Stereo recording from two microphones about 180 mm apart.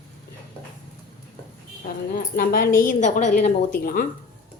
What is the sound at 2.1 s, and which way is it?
Speech, 55° left (ahead or behind).